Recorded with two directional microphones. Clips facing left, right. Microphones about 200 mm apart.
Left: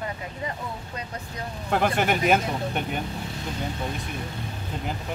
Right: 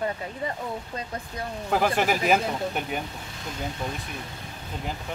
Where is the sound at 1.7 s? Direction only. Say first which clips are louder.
Even; centre (ahead or behind).